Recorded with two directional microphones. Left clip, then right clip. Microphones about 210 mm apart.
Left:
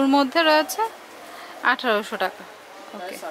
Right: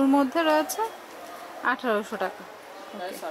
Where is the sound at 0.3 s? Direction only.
10° right (ahead or behind).